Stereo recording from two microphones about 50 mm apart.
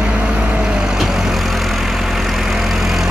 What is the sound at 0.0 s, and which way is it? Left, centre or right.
Vehicle, centre.